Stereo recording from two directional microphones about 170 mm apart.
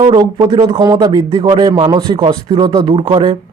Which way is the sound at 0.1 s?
30° right (ahead or behind).